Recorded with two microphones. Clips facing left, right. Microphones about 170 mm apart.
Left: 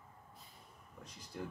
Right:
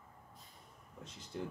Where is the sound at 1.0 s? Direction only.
25° right (ahead or behind).